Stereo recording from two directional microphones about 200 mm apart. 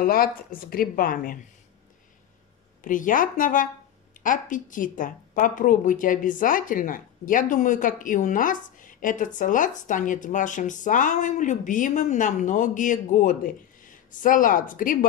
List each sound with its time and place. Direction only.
0.0 s speech: 45° left (ahead or behind)
2.8 s speech: 40° left (ahead or behind)